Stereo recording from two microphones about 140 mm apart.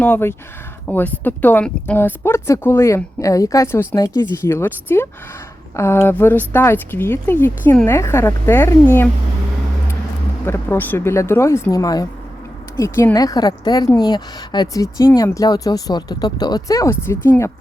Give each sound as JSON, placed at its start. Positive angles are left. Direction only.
{"t": 0.0, "sound": "speech", "side_deg": 15}
{"t": 4.5, "sound": "speech", "side_deg": 15}
{"t": 10.4, "sound": "a woman's voice", "side_deg": 15}